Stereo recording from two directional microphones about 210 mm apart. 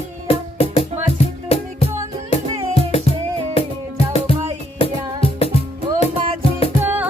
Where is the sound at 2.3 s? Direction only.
30° left (ahead or behind).